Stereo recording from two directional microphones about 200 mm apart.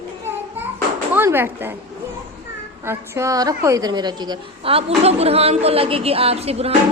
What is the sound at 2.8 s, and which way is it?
A woman's voice, 15° right (ahead or behind).